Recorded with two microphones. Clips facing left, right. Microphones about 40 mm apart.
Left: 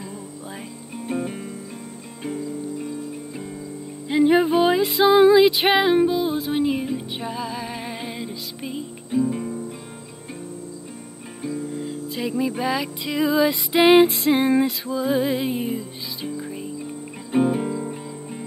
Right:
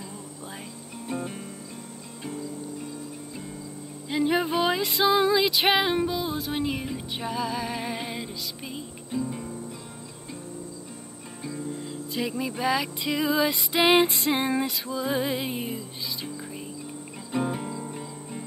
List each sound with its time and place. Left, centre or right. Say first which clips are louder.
1.0 s music: left 5 dB; left
4.1 s music: left 7 dB; centre
4.5 s music: left 6 dB; centre
5.0 s music: left 8 dB; centre
6.5 s music: left 7 dB; centre
9.1 s music: left 8 dB; centre
11.4 s music: left 5 dB; left
12.1 s music: left 4 dB; centre
13.7 s music: left 6 dB; centre
13.9 s music: left 6 dB; centre